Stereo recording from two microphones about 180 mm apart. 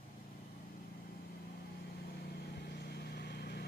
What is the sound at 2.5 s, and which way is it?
Vehicle, 60° left (ahead or behind).